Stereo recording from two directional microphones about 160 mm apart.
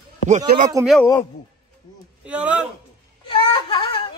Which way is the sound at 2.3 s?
5° right (ahead or behind).